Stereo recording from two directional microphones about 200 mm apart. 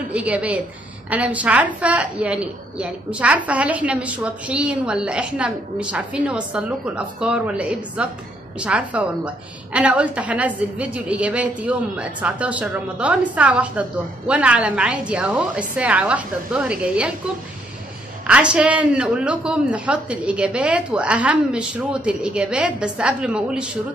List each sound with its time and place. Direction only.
0.1 s a woman's voice: 5° right (ahead or behind)
18.2 s a woman's voice: 5° right (ahead or behind)